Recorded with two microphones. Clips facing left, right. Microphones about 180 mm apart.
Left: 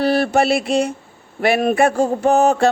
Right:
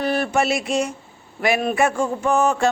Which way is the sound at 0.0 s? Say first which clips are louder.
Left 5 dB; 35° left (ahead or behind).